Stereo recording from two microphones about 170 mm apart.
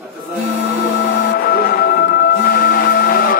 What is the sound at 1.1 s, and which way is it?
Music, 60° left (ahead or behind).